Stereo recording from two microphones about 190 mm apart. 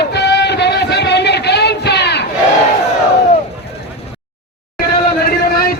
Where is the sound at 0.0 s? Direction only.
60° left (ahead or behind).